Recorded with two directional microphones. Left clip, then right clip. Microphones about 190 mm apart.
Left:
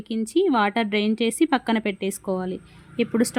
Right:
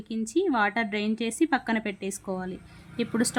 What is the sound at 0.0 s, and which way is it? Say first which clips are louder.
A woman's voice: left 5 dB; 20° left (ahead or behind).